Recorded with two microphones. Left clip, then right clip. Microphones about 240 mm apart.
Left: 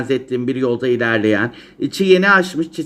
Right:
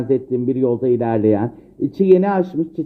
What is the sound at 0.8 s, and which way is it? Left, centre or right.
Speech, centre.